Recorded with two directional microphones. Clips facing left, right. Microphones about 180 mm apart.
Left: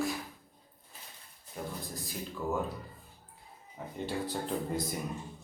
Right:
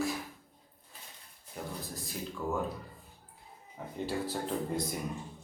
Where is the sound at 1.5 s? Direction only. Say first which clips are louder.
Left 1 dB; centre (ahead or behind).